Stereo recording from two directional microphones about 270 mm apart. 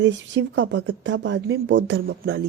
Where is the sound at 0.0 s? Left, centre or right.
Right.